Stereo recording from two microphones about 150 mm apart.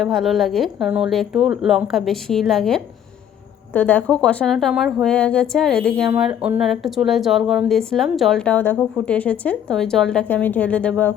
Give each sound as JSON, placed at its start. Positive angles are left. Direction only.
{"t": 0.0, "sound": "speech", "side_deg": 0}
{"t": 6.1, "sound": "speech", "side_deg": -5}